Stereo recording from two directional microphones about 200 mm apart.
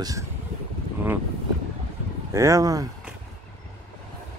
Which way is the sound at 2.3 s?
15° right (ahead or behind).